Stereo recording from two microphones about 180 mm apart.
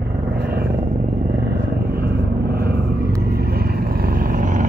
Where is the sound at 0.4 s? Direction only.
60° right (ahead or behind).